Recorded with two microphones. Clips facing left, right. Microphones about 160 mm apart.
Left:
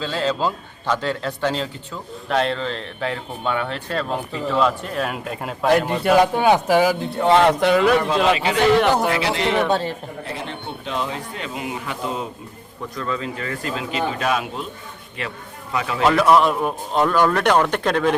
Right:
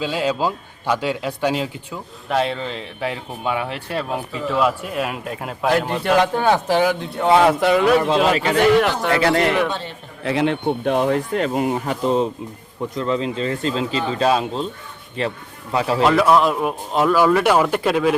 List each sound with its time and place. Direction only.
0.0 s a man's voice: 10° right (ahead or behind)
8.3 s speech: 40° right (ahead or behind)
9.2 s speech: 50° right (ahead or behind)
9.6 s a man's voice: 40° left (ahead or behind)
10.2 s speech: 80° right
10.7 s speech: 55° right (ahead or behind); by 12.3 s 35° right (ahead or behind)
13.0 s speech: 25° right (ahead or behind)
16.0 s a man's voice: centre (ahead or behind)